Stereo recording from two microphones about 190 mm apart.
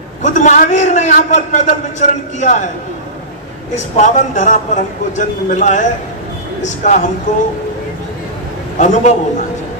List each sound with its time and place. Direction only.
0.2 s a man's voice: 40° left (ahead or behind)
3.7 s a man's voice: 40° left (ahead or behind)
8.7 s a man's voice: 40° left (ahead or behind)